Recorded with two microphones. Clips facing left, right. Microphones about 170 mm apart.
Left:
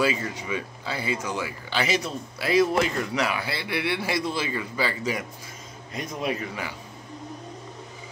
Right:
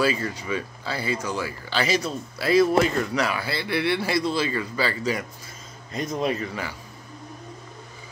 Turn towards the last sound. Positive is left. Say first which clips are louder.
# right 2 dB
turn(degrees=15)  # may be behind; listen again after turning